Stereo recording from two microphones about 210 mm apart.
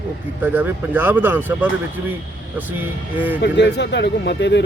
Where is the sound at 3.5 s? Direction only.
55° left (ahead or behind).